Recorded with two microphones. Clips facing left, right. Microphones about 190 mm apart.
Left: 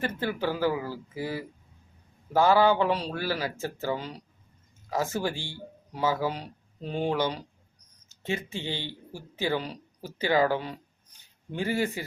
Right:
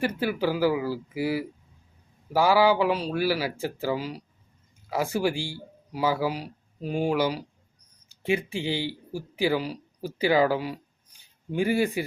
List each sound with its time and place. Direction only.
0.0 s speech: 10° right (ahead or behind)